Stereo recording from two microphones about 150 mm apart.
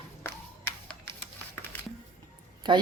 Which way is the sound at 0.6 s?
15° left (ahead or behind).